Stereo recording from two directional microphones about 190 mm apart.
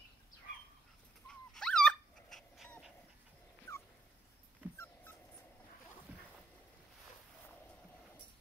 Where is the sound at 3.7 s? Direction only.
15° left (ahead or behind).